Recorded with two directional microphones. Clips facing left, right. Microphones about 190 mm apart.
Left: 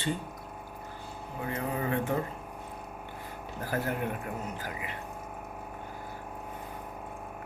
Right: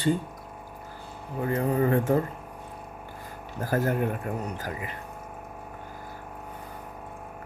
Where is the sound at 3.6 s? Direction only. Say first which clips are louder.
Right 6 dB; 40° right (ahead or behind).